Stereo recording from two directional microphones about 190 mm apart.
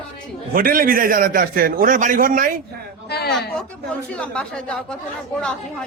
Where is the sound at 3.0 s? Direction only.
60° left (ahead or behind).